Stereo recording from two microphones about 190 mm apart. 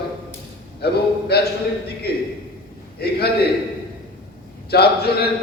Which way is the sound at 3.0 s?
55° left (ahead or behind).